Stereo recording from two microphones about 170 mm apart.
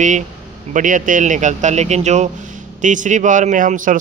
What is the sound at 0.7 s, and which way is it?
A man's voice, 50° right (ahead or behind).